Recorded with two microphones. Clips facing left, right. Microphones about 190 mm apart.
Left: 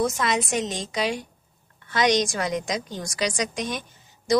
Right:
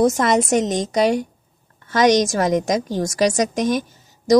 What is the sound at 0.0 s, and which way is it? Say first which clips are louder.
A woman's voice: right 8 dB; 45° right (ahead or behind).